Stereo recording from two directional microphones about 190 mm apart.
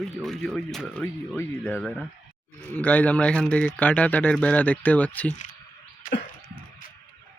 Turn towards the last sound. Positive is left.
turn(degrees=45)  # may be behind; listen again after turning